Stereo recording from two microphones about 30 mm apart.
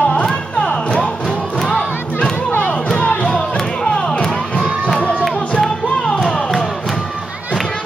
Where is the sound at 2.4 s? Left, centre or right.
Left.